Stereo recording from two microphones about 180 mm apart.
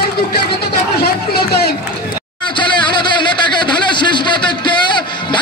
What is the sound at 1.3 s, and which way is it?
Speech, 60° left (ahead or behind).